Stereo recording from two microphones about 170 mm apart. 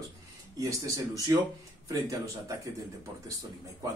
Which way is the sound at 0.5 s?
20° right (ahead or behind).